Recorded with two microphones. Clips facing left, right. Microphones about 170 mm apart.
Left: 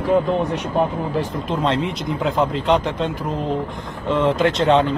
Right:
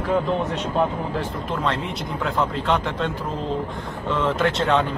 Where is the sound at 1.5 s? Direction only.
20° left (ahead or behind).